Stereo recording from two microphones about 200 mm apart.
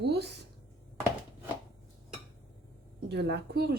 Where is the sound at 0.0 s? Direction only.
55° right (ahead or behind).